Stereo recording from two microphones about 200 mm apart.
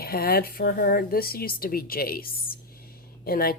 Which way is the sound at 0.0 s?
50° left (ahead or behind).